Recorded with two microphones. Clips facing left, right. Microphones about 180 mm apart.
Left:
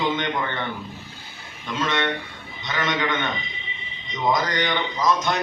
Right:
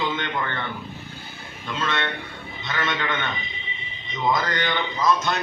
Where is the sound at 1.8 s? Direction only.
15° left (ahead or behind).